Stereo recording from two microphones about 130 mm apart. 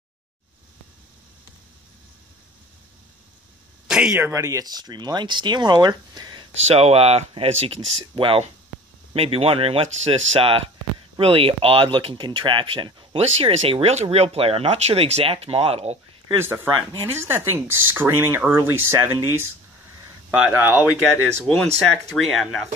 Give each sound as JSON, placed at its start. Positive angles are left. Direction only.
{"t": 3.8, "sound": "a sound", "side_deg": -5}
{"t": 4.2, "sound": "speech", "side_deg": -25}
{"t": 6.5, "sound": "speech", "side_deg": -55}
{"t": 16.3, "sound": "speech", "side_deg": -20}
{"t": 21.0, "sound": "speech", "side_deg": 10}